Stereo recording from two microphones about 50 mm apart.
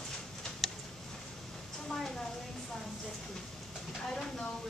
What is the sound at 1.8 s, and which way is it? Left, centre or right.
Speech, centre.